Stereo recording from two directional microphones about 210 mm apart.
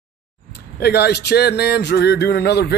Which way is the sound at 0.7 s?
50° left (ahead or behind).